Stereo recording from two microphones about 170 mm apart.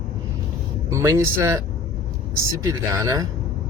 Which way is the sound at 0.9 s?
15° right (ahead or behind).